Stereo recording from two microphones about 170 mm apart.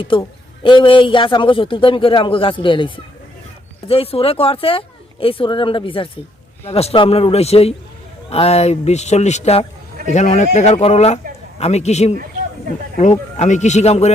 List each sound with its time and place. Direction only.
0.0 s a man's voice: 30° left (ahead or behind)